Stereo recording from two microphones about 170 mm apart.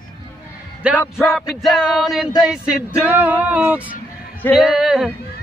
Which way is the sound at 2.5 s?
5° right (ahead or behind).